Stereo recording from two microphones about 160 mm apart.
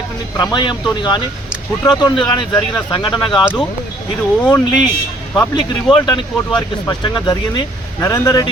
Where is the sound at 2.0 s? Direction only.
25° left (ahead or behind).